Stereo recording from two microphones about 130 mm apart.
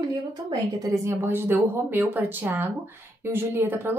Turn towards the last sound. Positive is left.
turn(degrees=-15)  # may be behind; listen again after turning